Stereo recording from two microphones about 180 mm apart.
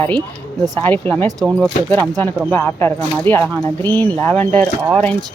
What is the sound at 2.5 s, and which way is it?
Speech, 10° left (ahead or behind).